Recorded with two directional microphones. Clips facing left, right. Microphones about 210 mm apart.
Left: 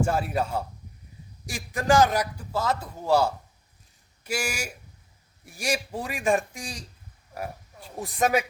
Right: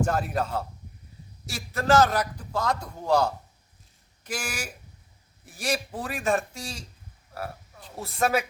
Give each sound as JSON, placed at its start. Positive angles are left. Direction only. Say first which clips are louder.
{"t": 0.0, "sound": "a man's voice", "louder": "left 1 dB", "side_deg": 10}